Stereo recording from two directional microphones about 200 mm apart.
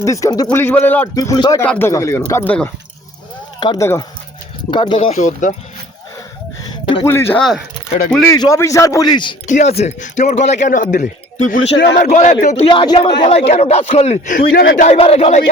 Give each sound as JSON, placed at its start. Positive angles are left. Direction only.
{"t": 0.0, "sound": "a man's voice", "side_deg": 15}
{"t": 3.6, "sound": "a man's voice", "side_deg": 20}
{"t": 4.9, "sound": "a man's voice", "side_deg": 40}
{"t": 6.8, "sound": "speech", "side_deg": 25}
{"t": 7.1, "sound": "a man's voice", "side_deg": 10}
{"t": 9.5, "sound": "a man's voice", "side_deg": 35}
{"t": 14.9, "sound": "a man's voice", "side_deg": 30}